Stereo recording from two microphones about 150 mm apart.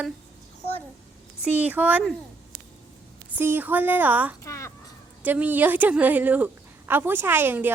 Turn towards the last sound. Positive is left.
turn(degrees=-15)  # may be behind; listen again after turning